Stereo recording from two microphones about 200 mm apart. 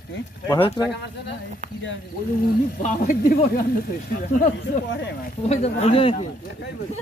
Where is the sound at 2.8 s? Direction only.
40° left (ahead or behind).